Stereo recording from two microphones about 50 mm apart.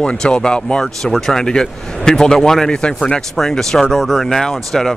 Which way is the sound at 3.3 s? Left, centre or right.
Centre.